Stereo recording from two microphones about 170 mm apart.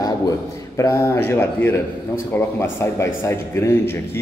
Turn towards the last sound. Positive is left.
turn(degrees=15)  # may be behind; listen again after turning